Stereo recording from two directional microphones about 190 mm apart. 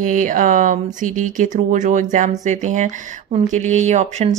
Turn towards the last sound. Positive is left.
turn(degrees=-40)  # may be behind; listen again after turning